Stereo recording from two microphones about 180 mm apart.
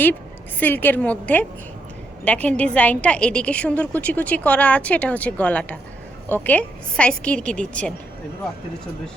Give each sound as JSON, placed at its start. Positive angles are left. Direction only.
{"t": 0.6, "sound": "a woman's voice", "side_deg": 10}